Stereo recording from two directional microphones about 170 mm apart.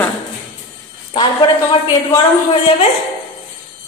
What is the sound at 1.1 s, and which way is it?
Speech, 30° left (ahead or behind).